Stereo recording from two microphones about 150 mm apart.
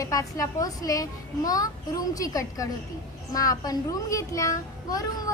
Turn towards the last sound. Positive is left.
turn(degrees=20)  # may be behind; listen again after turning